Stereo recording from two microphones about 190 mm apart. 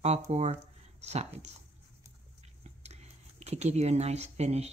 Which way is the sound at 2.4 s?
35° right (ahead or behind).